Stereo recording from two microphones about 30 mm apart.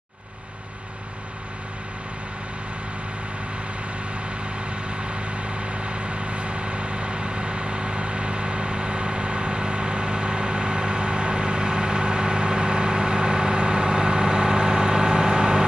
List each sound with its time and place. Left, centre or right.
4.6 s vehicle: right